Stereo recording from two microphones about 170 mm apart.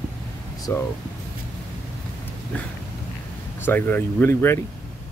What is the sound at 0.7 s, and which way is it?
Speech, 15° left (ahead or behind).